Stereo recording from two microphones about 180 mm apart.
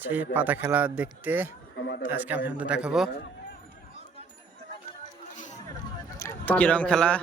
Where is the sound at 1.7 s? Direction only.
80° left.